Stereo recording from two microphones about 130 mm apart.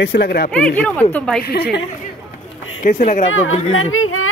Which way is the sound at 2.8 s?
85° left.